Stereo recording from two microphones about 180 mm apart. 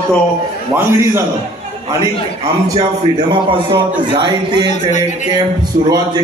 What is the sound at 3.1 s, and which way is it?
A man's voice, 25° right (ahead or behind).